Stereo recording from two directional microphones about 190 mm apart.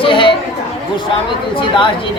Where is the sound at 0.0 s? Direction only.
25° left (ahead or behind).